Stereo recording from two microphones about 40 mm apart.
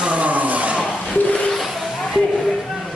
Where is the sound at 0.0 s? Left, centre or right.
Right.